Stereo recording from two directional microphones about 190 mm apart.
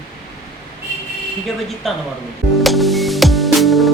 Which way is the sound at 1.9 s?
Centre (ahead or behind).